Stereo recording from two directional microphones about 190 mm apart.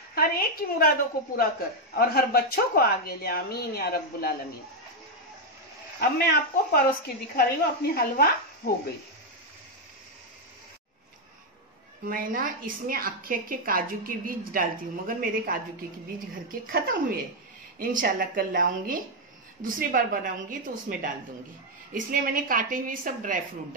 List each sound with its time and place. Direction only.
0.1 s a woman's voice: 50° left (ahead or behind)
5.9 s speech: 55° left (ahead or behind)
7.9 s a woman's voice: 55° left (ahead or behind)
12.1 s a woman's voice: 50° right (ahead or behind)